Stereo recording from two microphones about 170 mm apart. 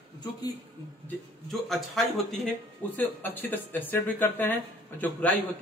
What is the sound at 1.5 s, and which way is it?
A man's voice, centre (ahead or behind).